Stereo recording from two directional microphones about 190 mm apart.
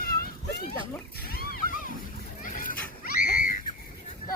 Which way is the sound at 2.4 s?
45° left (ahead or behind).